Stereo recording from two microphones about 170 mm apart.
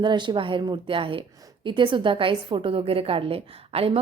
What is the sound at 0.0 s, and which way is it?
A woman's voice, 25° right (ahead or behind).